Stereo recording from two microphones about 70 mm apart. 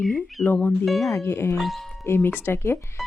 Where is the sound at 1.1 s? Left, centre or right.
Left.